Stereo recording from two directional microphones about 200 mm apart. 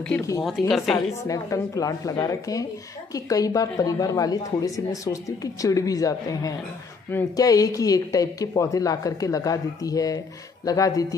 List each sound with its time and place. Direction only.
0.4 s speech: centre (ahead or behind)
0.9 s speech: 15° left (ahead or behind)